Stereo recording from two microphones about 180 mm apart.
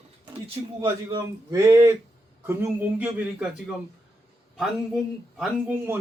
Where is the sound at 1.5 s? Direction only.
15° right (ahead or behind).